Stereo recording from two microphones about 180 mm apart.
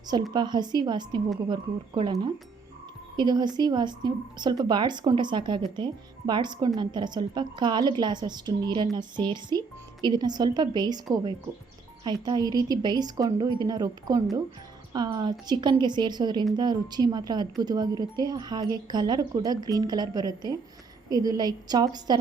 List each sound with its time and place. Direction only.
0.3 s a woman's voice: 25° right (ahead or behind)
3.2 s a woman's voice: 25° right (ahead or behind)